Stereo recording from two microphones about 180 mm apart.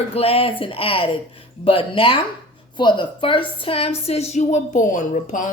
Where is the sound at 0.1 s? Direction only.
35° left (ahead or behind).